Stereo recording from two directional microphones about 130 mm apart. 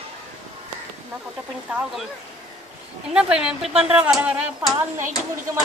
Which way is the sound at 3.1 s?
5° right (ahead or behind).